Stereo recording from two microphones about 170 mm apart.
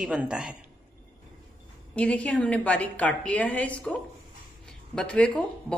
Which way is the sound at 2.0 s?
5° left (ahead or behind).